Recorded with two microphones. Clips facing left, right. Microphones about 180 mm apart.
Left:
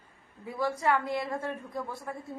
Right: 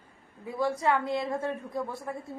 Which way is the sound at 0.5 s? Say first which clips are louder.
Right 1 dB; 20° right (ahead or behind).